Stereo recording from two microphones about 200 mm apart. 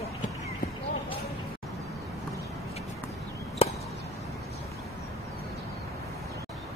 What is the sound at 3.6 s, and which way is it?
Chop, 30° left (ahead or behind).